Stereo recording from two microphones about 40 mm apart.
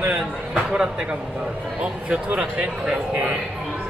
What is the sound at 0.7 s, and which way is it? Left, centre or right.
A man's voice, right.